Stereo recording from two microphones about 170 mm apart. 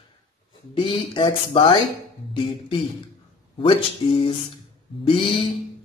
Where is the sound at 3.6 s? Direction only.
30° left (ahead or behind).